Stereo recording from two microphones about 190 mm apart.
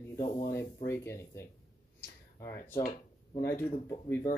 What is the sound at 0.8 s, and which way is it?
Speech, 15° left (ahead or behind).